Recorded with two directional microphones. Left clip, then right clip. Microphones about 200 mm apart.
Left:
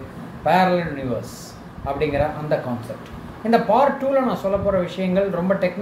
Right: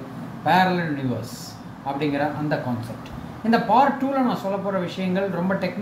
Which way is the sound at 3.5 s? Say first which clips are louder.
Left 2 dB; 10° left (ahead or behind).